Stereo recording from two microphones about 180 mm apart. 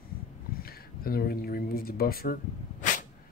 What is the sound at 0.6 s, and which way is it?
Speech, 55° left (ahead or behind).